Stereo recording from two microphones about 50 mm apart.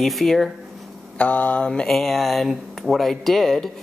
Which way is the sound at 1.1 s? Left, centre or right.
Left.